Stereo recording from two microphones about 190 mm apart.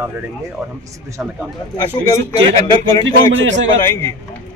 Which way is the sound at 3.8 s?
15° left (ahead or behind).